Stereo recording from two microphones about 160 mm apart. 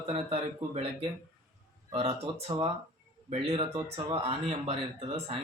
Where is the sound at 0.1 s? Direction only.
40° right (ahead or behind).